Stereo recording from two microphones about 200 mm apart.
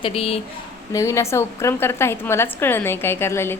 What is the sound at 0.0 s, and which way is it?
Speech, 30° left (ahead or behind).